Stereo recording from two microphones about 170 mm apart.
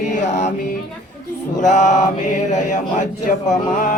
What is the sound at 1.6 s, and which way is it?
Mantra, 45° left (ahead or behind).